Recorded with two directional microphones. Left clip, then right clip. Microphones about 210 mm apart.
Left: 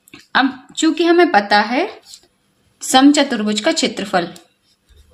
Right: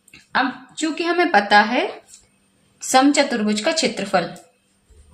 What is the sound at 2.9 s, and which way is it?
A woman's voice, 40° left (ahead or behind).